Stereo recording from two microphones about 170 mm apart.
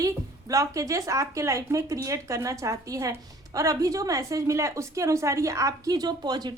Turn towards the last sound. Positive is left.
turn(degrees=-25)  # may be behind; listen again after turning